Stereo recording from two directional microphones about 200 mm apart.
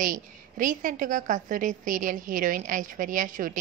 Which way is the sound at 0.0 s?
40° right (ahead or behind).